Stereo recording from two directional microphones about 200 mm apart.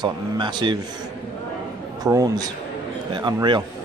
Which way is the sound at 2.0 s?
20° right (ahead or behind).